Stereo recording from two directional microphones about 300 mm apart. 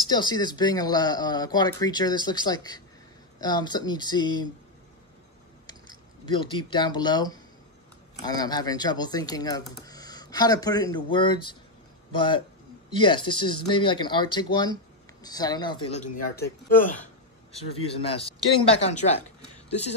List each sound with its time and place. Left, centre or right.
0.1 s speech: centre
6.2 s speech: centre
12.9 s speech: centre